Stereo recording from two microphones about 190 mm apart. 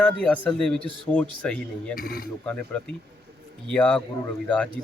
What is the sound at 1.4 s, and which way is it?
Speech, 5° left (ahead or behind).